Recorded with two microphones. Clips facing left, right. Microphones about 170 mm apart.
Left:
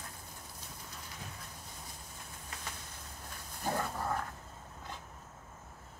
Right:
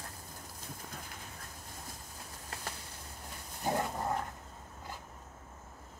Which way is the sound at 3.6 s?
20° right (ahead or behind).